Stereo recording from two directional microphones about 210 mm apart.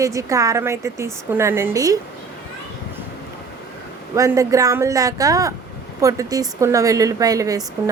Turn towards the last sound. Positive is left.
turn(degrees=-15)  # may be behind; listen again after turning